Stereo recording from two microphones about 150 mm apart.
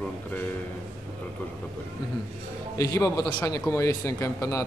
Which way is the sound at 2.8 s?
20° left (ahead or behind).